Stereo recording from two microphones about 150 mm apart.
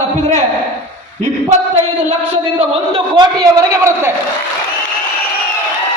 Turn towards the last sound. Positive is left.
turn(degrees=-20)  # may be behind; listen again after turning